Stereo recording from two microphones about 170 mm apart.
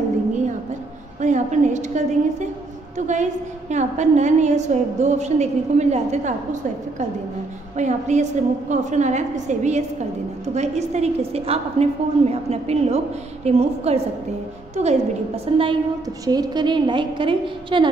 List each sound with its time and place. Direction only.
1.2 s a woman's voice: 45° right (ahead or behind); by 17.8 s 30° right (ahead or behind)